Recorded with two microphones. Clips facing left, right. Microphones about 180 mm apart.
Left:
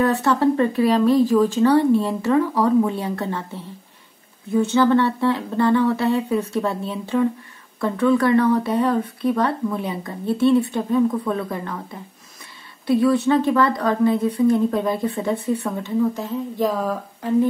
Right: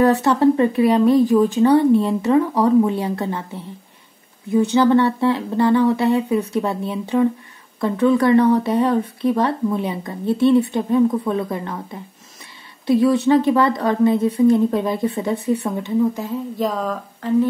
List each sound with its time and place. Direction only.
0.0 s speech: 20° right (ahead or behind)
4.5 s speech: 15° right (ahead or behind)
12.8 s speech: 20° right (ahead or behind)
16.5 s speech: centre (ahead or behind)